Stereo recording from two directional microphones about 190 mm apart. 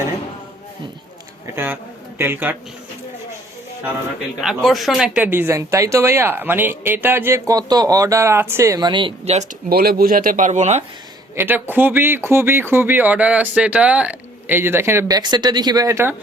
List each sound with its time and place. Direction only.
1.5 s speech: 10° right (ahead or behind)
4.4 s speech: centre (ahead or behind); by 9.5 s 35° right (ahead or behind)
9.6 s speech: 55° right (ahead or behind); by 10.8 s 35° right (ahead or behind)
11.3 s speech: 10° right (ahead or behind)